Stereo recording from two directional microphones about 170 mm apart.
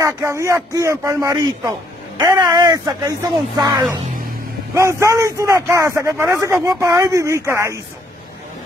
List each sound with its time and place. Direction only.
0.0 s speech: 15° right (ahead or behind)